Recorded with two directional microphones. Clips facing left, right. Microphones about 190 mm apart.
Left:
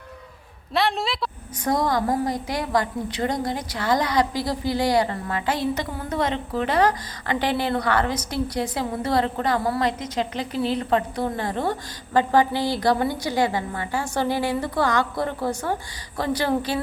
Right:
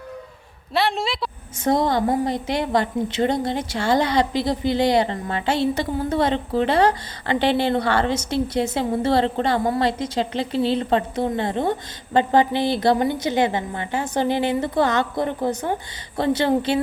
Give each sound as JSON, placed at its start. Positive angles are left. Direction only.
{"t": 0.7, "sound": "speech", "side_deg": 0}
{"t": 1.6, "sound": "a woman's voice", "side_deg": -25}